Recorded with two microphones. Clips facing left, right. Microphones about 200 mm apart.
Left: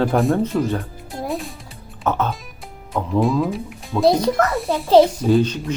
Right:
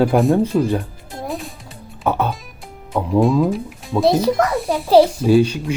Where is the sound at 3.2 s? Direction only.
Centre (ahead or behind).